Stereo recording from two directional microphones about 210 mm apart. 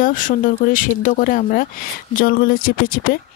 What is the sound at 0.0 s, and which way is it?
Speech, 40° left (ahead or behind).